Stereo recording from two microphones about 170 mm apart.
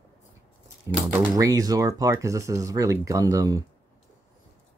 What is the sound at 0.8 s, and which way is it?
Speech, 20° right (ahead or behind).